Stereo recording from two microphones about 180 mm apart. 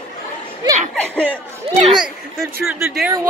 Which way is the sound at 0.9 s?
5° left (ahead or behind).